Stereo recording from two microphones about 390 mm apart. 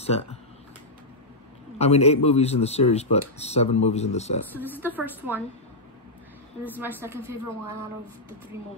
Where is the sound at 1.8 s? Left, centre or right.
Centre.